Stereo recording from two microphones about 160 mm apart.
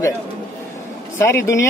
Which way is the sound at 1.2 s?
15° left (ahead or behind).